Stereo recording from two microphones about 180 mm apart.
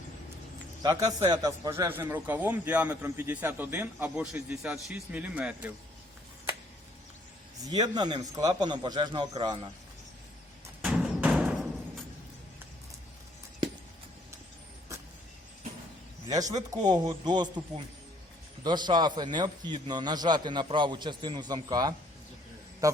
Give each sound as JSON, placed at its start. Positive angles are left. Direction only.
{"t": 0.8, "sound": "a man's voice", "side_deg": -20}
{"t": 7.6, "sound": "a man's voice", "side_deg": -20}
{"t": 10.8, "sound": "music", "side_deg": -5}
{"t": 16.2, "sound": "a man's voice", "side_deg": -20}
{"t": 18.6, "sound": "a man's voice", "side_deg": -25}